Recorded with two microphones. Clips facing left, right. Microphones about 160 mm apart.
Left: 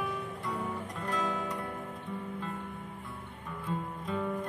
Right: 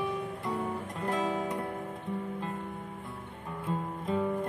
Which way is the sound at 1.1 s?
25° right (ahead or behind).